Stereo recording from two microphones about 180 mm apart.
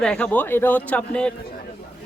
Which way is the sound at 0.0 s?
5° left (ahead or behind).